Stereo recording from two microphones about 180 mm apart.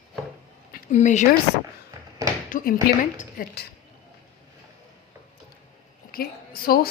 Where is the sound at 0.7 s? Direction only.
40° left (ahead or behind).